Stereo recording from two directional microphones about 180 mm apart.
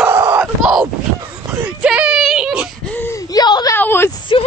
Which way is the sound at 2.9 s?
15° left (ahead or behind).